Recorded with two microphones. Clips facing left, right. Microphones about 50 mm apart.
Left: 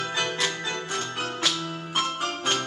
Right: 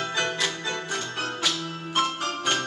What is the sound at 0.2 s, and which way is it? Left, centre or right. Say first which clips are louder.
Music: even; centre.